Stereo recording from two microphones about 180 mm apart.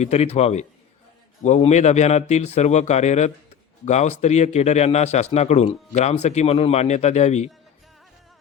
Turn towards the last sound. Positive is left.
turn(degrees=40)  # may be behind; listen again after turning